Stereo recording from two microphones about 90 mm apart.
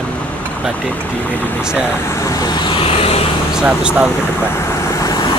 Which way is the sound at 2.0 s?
35° left (ahead or behind).